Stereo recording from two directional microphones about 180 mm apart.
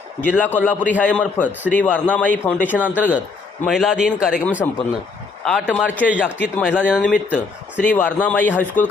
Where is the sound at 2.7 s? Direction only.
10° right (ahead or behind).